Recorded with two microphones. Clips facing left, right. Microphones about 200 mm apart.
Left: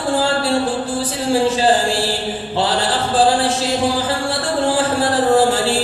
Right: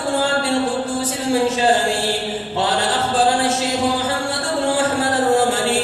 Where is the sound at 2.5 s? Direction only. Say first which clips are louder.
Left 1 dB; 30° left (ahead or behind).